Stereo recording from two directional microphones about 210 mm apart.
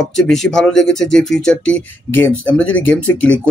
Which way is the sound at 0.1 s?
Centre (ahead or behind).